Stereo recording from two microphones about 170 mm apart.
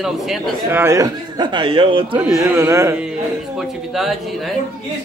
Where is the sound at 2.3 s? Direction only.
20° right (ahead or behind).